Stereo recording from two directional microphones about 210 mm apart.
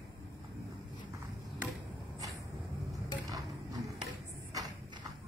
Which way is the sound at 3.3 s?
15° right (ahead or behind).